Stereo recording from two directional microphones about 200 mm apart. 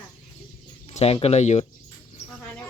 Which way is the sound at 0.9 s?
30° left (ahead or behind).